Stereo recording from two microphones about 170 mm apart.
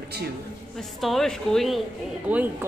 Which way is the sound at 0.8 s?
Centre (ahead or behind).